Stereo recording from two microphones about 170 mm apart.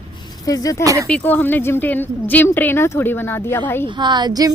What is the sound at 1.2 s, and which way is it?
A woman's voice, 10° left (ahead or behind).